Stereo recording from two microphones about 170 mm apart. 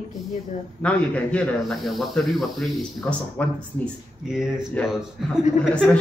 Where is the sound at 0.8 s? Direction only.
5° left (ahead or behind).